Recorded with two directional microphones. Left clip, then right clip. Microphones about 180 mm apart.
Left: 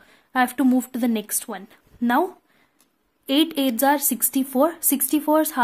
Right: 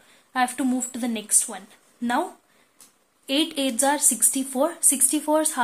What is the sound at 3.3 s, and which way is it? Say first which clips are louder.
Speech: left 3 dB; 40° left (ahead or behind).